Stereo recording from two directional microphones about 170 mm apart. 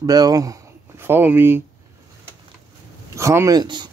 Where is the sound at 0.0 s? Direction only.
20° right (ahead or behind).